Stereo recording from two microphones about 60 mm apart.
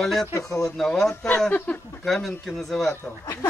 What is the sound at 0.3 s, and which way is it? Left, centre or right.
Speech, left.